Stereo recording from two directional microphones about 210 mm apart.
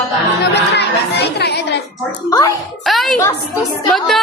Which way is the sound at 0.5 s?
55° left (ahead or behind).